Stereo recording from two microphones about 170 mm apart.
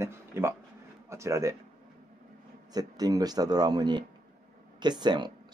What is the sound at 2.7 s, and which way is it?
Speech, 20° right (ahead or behind).